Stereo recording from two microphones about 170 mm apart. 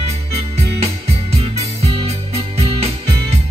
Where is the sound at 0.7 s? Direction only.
35° right (ahead or behind).